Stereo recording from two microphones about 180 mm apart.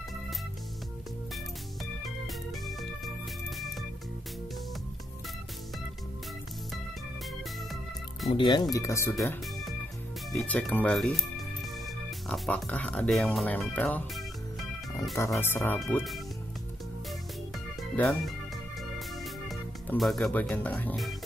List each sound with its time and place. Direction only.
2.0 s organ: centre (ahead or behind)
3.4 s music: centre (ahead or behind)
8.3 s speech: 25° left (ahead or behind)
10.3 s speech: 5° left (ahead or behind)
15.4 s speech: 10° left (ahead or behind)
15.8 s speech: centre (ahead or behind)
17.7 s music: centre (ahead or behind)